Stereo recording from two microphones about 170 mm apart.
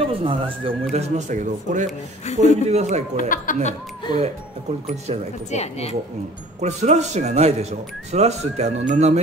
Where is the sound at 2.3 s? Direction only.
40° left (ahead or behind).